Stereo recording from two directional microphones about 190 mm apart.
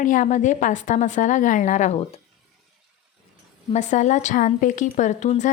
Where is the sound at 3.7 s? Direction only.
40° left (ahead or behind).